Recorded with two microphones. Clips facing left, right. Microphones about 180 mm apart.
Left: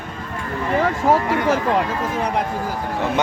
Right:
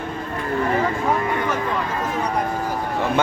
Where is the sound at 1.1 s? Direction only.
90° left.